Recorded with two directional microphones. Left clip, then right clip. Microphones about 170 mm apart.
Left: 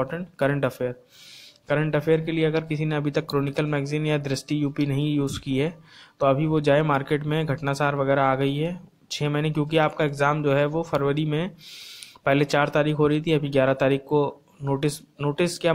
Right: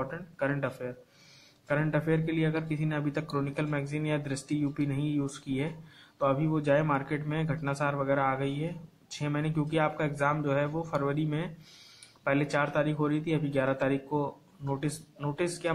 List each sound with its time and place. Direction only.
0.0 s speech: 40° left (ahead or behind)